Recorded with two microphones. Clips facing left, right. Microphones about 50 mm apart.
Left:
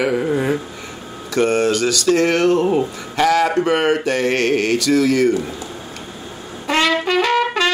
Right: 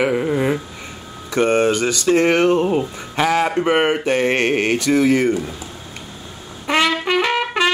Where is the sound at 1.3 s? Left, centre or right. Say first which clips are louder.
Even; right.